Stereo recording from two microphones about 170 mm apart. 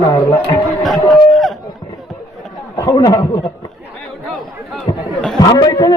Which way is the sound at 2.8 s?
20° left (ahead or behind).